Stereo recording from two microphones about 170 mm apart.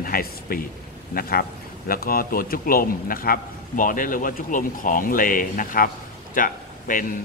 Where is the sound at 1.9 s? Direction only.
60° left (ahead or behind).